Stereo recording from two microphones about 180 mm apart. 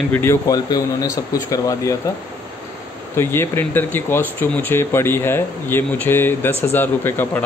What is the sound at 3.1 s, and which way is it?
Speech, 15° left (ahead or behind).